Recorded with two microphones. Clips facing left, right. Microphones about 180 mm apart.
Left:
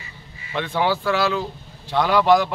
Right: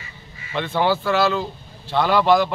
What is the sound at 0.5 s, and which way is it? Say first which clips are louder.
Speech: right 1 dB; 10° left (ahead or behind).